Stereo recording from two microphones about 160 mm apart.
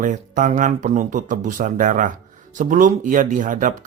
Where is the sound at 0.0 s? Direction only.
55° right (ahead or behind).